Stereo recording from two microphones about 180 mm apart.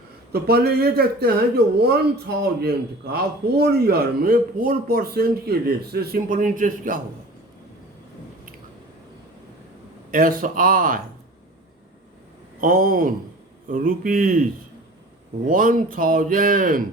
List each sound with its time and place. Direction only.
0.3 s speech: 60° right (ahead or behind)
10.1 s speech: 50° right (ahead or behind)
12.5 s speech: 50° right (ahead or behind)
15.4 s speech: 50° right (ahead or behind)